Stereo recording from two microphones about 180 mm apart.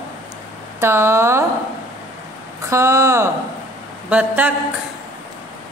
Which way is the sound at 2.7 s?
15° right (ahead or behind).